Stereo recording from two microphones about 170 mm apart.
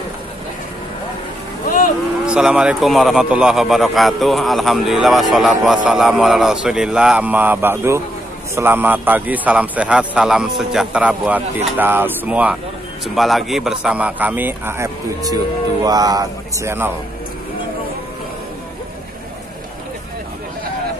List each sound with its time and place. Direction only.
2.2 s a man's voice: 5° right (ahead or behind)